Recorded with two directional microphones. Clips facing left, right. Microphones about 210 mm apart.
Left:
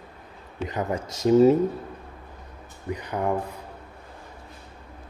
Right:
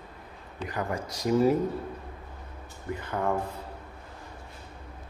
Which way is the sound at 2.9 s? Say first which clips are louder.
Left 3 dB; 15° left (ahead or behind).